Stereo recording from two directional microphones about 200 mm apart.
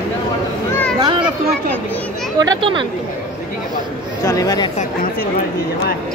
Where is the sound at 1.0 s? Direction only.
25° right (ahead or behind).